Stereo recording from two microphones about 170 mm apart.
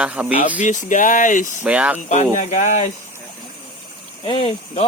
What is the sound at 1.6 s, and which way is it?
Speech, 5° right (ahead or behind).